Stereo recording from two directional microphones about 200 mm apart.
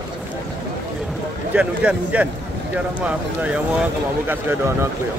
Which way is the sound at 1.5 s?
5° right (ahead or behind).